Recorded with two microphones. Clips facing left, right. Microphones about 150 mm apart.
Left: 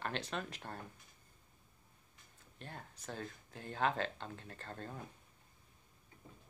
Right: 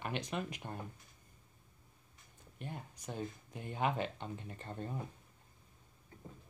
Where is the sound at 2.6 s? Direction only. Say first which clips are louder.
Right 4 dB; 15° right (ahead or behind).